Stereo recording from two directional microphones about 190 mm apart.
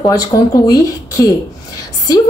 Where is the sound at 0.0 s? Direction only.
20° left (ahead or behind).